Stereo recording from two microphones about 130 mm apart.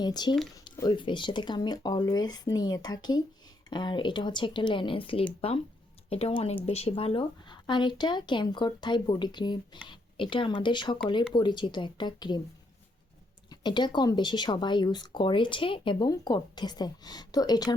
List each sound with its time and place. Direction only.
0.0 s speech: 35° left (ahead or behind)
13.5 s speech: 35° left (ahead or behind)